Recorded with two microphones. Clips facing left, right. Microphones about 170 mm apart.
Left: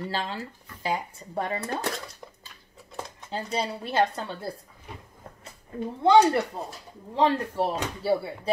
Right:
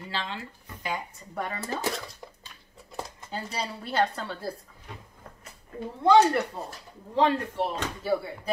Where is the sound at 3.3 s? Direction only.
25° left (ahead or behind).